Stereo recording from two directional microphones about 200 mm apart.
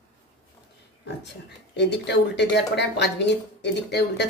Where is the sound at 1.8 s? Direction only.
60° left (ahead or behind).